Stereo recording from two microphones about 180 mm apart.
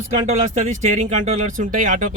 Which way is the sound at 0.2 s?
40° right (ahead or behind).